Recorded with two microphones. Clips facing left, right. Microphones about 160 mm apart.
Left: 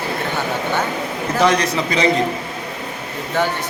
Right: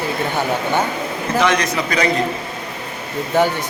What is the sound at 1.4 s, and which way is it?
Speech, 35° left (ahead or behind).